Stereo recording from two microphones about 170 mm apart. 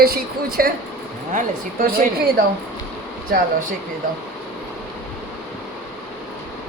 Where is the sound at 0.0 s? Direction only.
60° right (ahead or behind).